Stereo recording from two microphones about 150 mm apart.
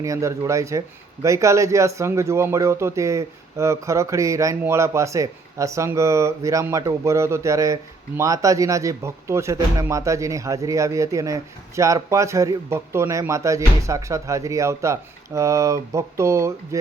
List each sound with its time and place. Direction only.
0.0 s speech: 20° right (ahead or behind)